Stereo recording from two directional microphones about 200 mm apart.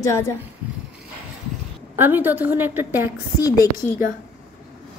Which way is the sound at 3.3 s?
15° left (ahead or behind).